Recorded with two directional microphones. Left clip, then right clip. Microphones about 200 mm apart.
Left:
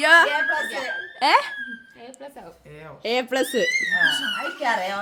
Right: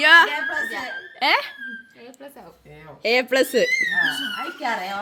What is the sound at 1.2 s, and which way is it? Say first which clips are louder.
Speech: left 2 dB; 10° left (ahead or behind).